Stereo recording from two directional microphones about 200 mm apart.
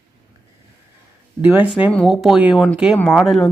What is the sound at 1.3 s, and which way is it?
Speech, 10° right (ahead or behind).